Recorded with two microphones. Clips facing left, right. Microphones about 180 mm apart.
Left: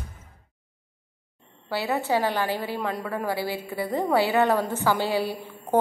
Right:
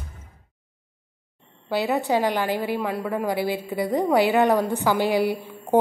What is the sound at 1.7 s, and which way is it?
A woman's voice, 15° right (ahead or behind).